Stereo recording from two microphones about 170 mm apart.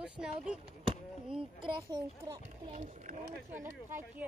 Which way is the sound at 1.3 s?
30° right (ahead or behind).